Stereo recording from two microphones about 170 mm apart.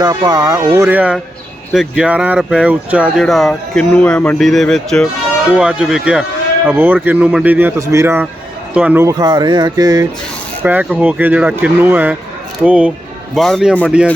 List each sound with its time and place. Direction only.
0.0 s speech: 20° right (ahead or behind)
10.6 s speech: 10° right (ahead or behind)